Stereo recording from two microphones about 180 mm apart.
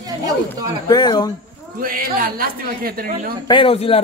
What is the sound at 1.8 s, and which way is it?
Speech, 50° right (ahead or behind).